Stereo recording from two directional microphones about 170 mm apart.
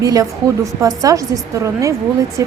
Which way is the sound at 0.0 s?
20° right (ahead or behind).